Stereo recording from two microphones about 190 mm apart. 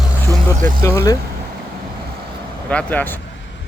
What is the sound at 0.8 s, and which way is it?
Speech, 15° left (ahead or behind).